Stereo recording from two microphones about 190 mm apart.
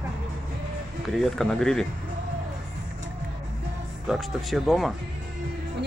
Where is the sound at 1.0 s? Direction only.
Centre (ahead or behind).